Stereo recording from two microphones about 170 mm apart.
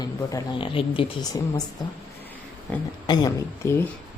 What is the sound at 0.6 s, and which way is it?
Speech, 30° left (ahead or behind).